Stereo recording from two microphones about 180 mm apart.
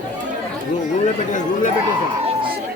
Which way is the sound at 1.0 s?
45° left (ahead or behind).